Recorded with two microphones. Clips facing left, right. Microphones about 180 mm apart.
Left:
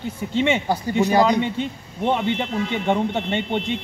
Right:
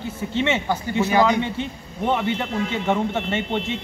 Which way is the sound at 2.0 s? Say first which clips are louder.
Left 1 dB; 15° left (ahead or behind).